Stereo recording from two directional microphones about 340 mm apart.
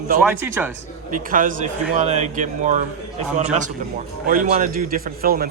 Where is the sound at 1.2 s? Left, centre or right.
Right.